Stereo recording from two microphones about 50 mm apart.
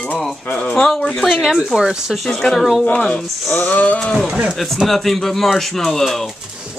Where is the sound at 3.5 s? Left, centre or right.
Left.